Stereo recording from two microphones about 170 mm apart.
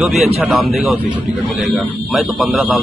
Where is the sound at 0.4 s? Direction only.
10° right (ahead or behind).